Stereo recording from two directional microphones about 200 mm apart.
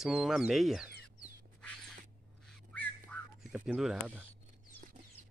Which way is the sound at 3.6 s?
5° right (ahead or behind).